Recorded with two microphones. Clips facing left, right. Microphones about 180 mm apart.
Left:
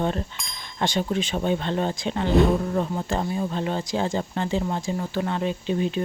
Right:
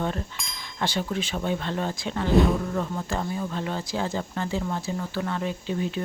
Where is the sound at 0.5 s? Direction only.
20° left (ahead or behind).